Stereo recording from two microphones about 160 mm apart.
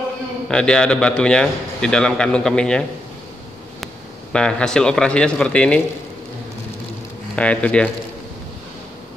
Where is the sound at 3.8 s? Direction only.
5° left (ahead or behind).